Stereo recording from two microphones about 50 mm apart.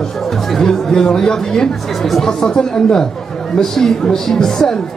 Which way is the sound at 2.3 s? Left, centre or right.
Centre.